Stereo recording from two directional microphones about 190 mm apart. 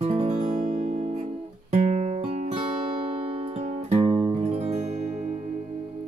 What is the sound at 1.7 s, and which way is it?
Music, 40° right (ahead or behind).